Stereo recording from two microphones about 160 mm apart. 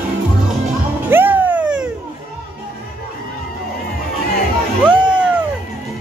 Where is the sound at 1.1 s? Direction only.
10° right (ahead or behind).